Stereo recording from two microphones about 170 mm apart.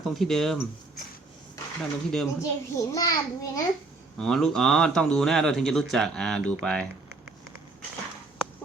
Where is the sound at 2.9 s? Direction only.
20° left (ahead or behind).